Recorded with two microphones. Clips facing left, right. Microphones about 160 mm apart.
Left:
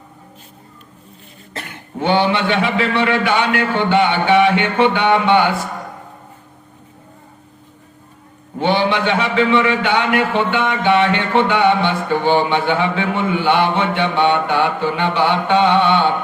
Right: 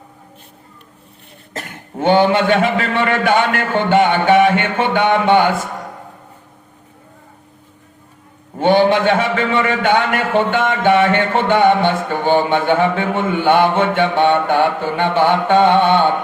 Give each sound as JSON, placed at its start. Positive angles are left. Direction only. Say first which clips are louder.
{"t": 1.5, "sound": "a man's voice", "louder": "right 1 dB", "side_deg": -45}
{"t": 8.5, "sound": "a man's voice", "louder": "right 4 dB", "side_deg": -45}